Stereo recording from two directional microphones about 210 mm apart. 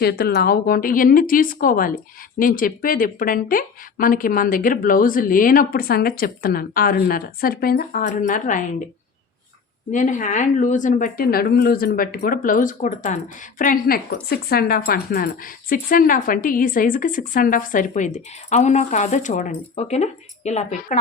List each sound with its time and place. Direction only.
0.0 s speech: 50° left (ahead or behind)
9.9 s speech: 35° left (ahead or behind)